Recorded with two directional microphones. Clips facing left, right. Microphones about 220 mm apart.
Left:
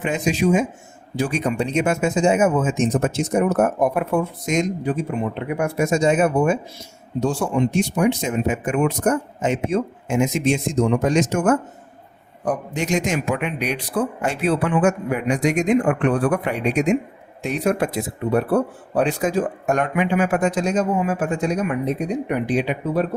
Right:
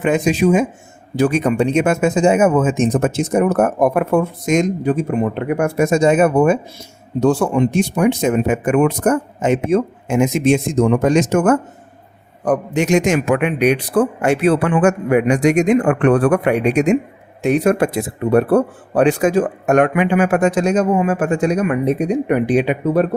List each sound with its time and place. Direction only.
0.0 s speech: 55° right (ahead or behind)
12.5 s speech: 75° right (ahead or behind); by 23.0 s 60° right (ahead or behind)